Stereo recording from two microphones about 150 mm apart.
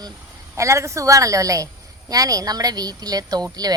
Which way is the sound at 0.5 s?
20° right (ahead or behind).